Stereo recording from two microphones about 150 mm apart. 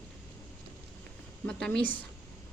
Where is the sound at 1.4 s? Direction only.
5° left (ahead or behind).